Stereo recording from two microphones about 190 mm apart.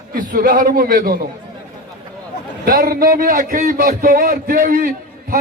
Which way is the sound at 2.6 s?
50° right (ahead or behind).